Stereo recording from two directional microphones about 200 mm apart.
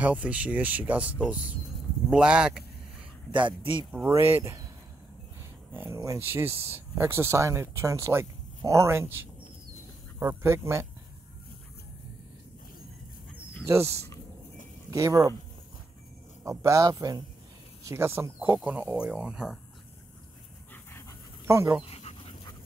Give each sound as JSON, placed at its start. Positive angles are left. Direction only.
{"t": 0.0, "sound": "speech", "side_deg": -5}
{"t": 3.3, "sound": "speech", "side_deg": -25}
{"t": 4.1, "sound": "speech", "side_deg": -15}
{"t": 5.4, "sound": "a sound", "side_deg": -10}
{"t": 5.9, "sound": "speech", "side_deg": -15}
{"t": 13.7, "sound": "speech", "side_deg": -15}
{"t": 16.4, "sound": "speech", "side_deg": -15}
{"t": 21.5, "sound": "speech", "side_deg": -15}
{"t": 21.8, "sound": "dog", "side_deg": 30}